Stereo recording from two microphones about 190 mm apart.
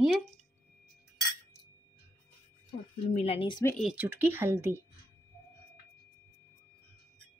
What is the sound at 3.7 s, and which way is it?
Speech, 5° right (ahead or behind).